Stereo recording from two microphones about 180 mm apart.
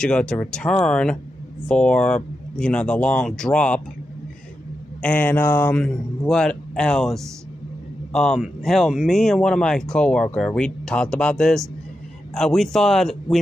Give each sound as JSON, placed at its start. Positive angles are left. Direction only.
{"t": 0.0, "sound": "speech", "side_deg": 5}
{"t": 5.0, "sound": "speech", "side_deg": 10}